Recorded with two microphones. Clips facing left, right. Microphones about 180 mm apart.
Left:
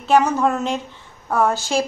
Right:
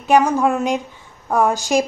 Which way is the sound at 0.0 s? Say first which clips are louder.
Right 2 dB; 10° right (ahead or behind).